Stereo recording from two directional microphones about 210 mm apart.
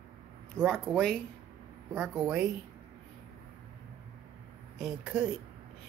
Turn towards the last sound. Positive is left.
turn(degrees=-5)  # may be behind; listen again after turning